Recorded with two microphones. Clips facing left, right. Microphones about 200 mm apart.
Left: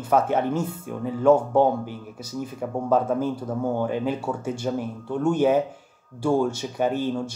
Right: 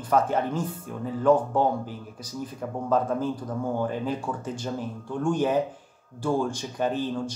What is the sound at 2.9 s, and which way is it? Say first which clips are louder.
Speech: left 2 dB; 10° left (ahead or behind).